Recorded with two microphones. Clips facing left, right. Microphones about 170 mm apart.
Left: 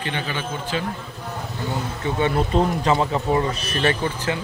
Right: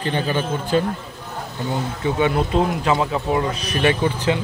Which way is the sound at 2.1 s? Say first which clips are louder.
Right 1 dB; 10° right (ahead or behind).